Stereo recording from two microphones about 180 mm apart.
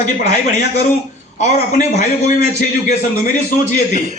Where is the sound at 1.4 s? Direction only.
40° left (ahead or behind).